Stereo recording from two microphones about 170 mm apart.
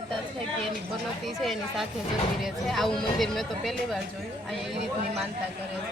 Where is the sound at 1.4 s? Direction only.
Centre (ahead or behind).